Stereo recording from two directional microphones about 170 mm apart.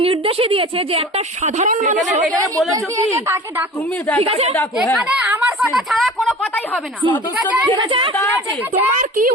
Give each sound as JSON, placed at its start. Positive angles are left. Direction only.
{"t": 0.0, "sound": "a woman's voice", "side_deg": -35}
{"t": 1.5, "sound": "a woman's voice", "side_deg": -50}
{"t": 4.2, "sound": "a woman's voice", "side_deg": -35}
{"t": 4.9, "sound": "speech", "side_deg": -5}
{"t": 7.8, "sound": "speech", "side_deg": -30}
{"t": 9.0, "sound": "a woman's voice", "side_deg": -55}